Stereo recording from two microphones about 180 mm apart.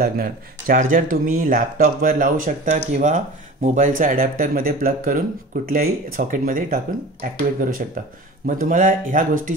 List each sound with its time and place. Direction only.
0.0 s speech: 55° right (ahead or behind)